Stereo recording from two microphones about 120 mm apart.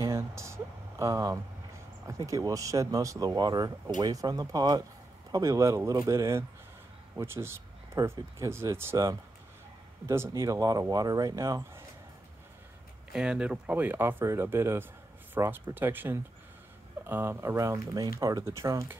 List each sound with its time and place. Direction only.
0.0 s a sound: 25° right (ahead or behind)
2.0 s speech: 25° right (ahead or behind)
13.1 s speech: 10° right (ahead or behind); by 18.9 s 25° right (ahead or behind)